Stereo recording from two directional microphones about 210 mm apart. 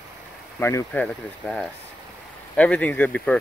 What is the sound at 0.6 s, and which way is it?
Speech, 10° left (ahead or behind).